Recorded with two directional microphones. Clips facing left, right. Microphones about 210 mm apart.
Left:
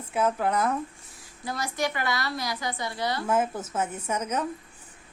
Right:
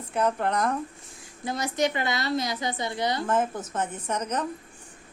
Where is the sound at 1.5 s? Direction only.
20° right (ahead or behind).